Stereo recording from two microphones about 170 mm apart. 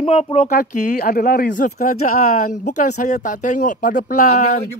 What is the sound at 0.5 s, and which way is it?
Speech, 55° left (ahead or behind).